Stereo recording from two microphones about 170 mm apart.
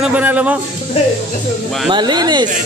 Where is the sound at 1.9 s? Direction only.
25° right (ahead or behind).